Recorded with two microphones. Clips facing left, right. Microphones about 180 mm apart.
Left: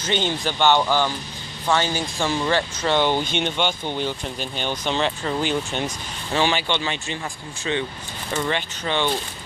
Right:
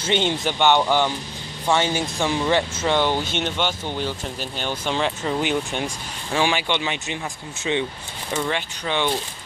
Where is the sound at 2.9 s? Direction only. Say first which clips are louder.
Left 2 dB; 5° right (ahead or behind).